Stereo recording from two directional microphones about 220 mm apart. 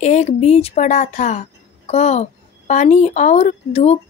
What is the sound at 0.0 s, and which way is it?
Speech, 30° left (ahead or behind).